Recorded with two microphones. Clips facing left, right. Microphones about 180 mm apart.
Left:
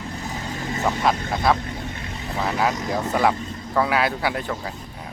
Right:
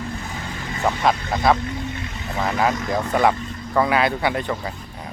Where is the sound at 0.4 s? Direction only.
40° left (ahead or behind).